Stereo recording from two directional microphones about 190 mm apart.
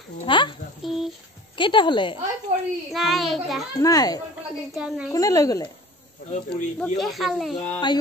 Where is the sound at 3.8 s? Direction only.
20° left (ahead or behind).